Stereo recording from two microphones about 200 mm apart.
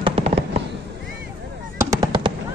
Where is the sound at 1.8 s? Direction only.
15° right (ahead or behind).